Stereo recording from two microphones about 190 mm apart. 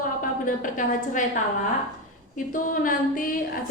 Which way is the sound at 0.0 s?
45° left (ahead or behind).